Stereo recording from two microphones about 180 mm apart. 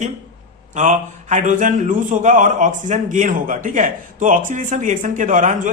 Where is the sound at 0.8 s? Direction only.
40° right (ahead or behind).